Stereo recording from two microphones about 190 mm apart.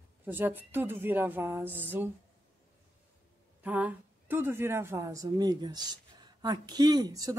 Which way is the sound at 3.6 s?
10° right (ahead or behind).